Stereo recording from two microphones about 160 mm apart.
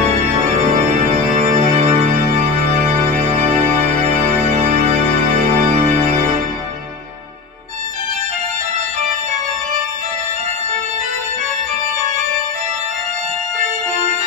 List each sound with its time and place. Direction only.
1.6 s music: 45° right (ahead or behind)
3.8 s music: 45° right (ahead or behind)